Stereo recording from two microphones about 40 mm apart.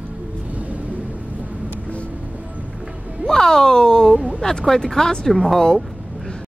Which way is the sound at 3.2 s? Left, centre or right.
Centre.